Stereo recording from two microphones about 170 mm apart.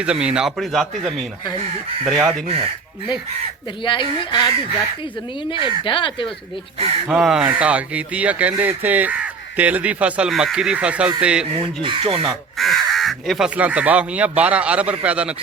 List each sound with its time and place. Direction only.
0.0 s a man's voice: 5° right (ahead or behind)
3.8 s speech: 30° left (ahead or behind)
7.1 s speech: 5° right (ahead or behind)
11.8 s speech: 30° right (ahead or behind)
12.3 s speech: centre (ahead or behind)